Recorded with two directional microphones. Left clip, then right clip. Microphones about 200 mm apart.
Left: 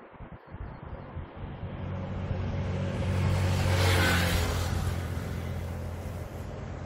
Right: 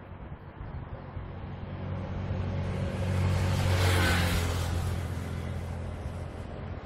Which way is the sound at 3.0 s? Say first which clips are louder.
Even; centre (ahead or behind).